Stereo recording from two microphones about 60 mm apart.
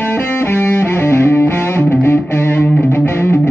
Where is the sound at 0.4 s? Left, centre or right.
Left.